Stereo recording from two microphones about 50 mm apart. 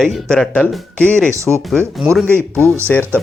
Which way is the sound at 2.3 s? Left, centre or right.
Right.